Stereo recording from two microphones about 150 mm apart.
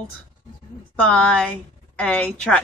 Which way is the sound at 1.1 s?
5° left (ahead or behind).